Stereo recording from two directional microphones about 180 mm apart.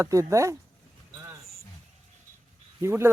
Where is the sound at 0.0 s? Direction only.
15° right (ahead or behind).